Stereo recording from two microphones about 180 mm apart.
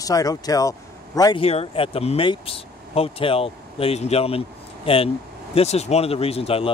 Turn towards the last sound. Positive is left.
turn(degrees=35)  # may be behind; listen again after turning